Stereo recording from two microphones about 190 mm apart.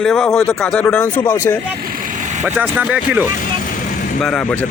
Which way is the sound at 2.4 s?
10° right (ahead or behind).